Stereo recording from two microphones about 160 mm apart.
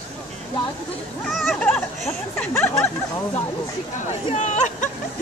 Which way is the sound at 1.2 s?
Centre (ahead or behind).